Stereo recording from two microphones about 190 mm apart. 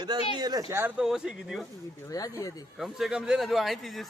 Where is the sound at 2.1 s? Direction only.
20° left (ahead or behind).